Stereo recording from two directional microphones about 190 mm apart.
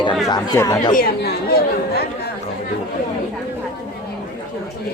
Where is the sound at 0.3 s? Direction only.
20° left (ahead or behind).